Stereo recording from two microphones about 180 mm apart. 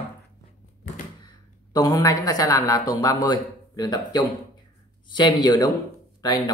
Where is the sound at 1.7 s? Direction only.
20° left (ahead or behind).